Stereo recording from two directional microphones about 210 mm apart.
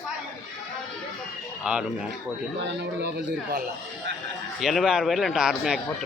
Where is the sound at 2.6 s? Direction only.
55° right (ahead or behind).